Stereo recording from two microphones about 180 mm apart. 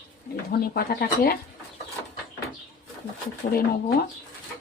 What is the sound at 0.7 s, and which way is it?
Speech, 55° left (ahead or behind).